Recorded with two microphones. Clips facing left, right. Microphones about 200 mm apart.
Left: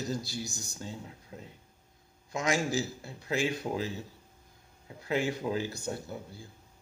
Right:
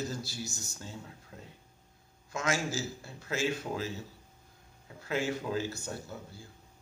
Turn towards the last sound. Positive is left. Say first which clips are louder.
# left 2 dB
turn(degrees=15)  # may be behind; listen again after turning